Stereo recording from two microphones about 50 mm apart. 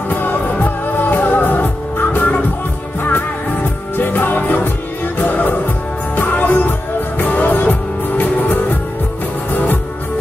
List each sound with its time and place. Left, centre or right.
0.1 s music: left
3.9 s music: left